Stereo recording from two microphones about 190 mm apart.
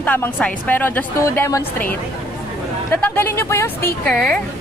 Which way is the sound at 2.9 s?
10° left (ahead or behind).